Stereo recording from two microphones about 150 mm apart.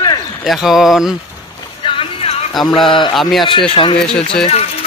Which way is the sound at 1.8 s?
35° left (ahead or behind).